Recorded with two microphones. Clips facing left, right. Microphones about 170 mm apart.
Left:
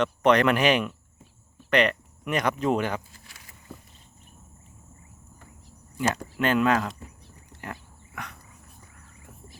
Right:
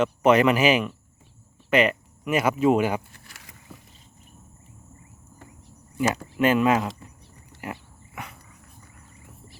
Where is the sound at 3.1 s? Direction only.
80° right.